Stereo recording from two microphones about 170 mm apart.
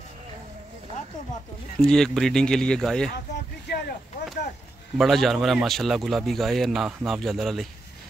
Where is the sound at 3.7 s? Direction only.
75° left (ahead or behind).